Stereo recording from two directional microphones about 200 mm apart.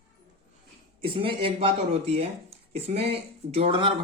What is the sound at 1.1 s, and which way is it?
Speech, 25° right (ahead or behind).